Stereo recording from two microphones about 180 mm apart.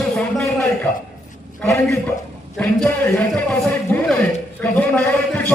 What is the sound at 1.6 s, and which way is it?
A man's voice, 15° left (ahead or behind).